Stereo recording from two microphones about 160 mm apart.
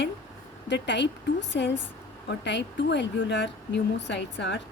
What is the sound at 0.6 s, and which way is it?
Speech, 90° left.